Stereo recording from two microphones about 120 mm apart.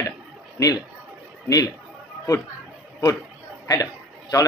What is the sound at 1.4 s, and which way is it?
Speech, 30° left (ahead or behind).